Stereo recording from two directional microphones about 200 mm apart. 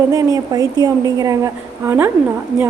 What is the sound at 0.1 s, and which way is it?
A woman's voice, 15° right (ahead or behind).